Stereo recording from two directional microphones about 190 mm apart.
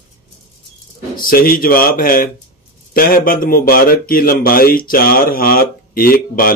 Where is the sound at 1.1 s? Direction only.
50° left (ahead or behind).